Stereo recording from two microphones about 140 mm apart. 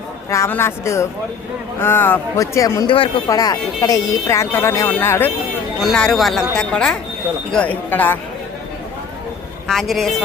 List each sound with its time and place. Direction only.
0.3 s speech: 20° left (ahead or behind)
2.8 s speech: 40° left (ahead or behind)
3.2 s speech: 25° left (ahead or behind)
5.8 s speech: centre (ahead or behind)
9.6 s speech: centre (ahead or behind)